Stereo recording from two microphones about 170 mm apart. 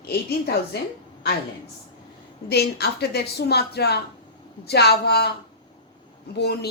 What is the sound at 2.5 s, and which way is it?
A woman's voice, 70° left (ahead or behind).